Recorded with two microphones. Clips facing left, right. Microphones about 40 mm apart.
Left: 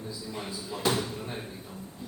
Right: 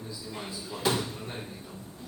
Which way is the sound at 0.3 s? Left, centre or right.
Centre.